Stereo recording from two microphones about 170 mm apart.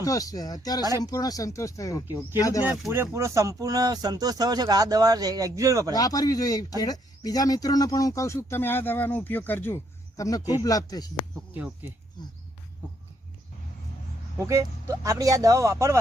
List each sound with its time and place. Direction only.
0.0 s speech: 20° left (ahead or behind)
2.6 s speech: centre (ahead or behind)
2.9 s speech: 15° right (ahead or behind)
5.9 s speech: 20° left (ahead or behind)
11.5 s speech: 10° right (ahead or behind)
14.3 s speech: 15° right (ahead or behind)